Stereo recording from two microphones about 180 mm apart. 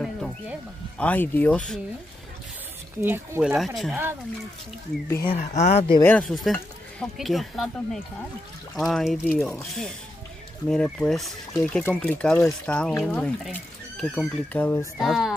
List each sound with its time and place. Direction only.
0.0 s speech: centre (ahead or behind)
3.0 s speech: 10° right (ahead or behind)
5.3 s speech: 45° left (ahead or behind)
6.0 s speech: 5° left (ahead or behind)
15.0 s speech: centre (ahead or behind)